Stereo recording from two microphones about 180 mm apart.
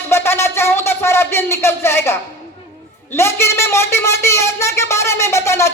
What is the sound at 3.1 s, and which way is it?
A man's voice, 15° left (ahead or behind).